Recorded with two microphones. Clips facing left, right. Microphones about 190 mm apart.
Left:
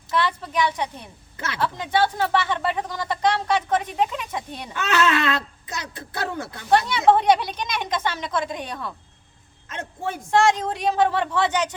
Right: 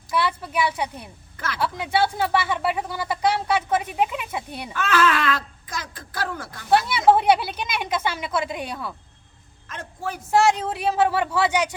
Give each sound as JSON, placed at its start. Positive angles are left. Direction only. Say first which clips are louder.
{"t": 0.1, "sound": "a sound", "louder": "even", "side_deg": -10}
{"t": 1.5, "sound": "speech", "louder": "left 1 dB", "side_deg": -10}
{"t": 4.7, "sound": "speech", "louder": "even", "side_deg": 20}
{"t": 6.7, "sound": "speech", "louder": "even", "side_deg": -5}
{"t": 9.6, "sound": "speech", "louder": "left 2 dB", "side_deg": 25}
{"t": 10.3, "sound": "speech", "louder": "even", "side_deg": -5}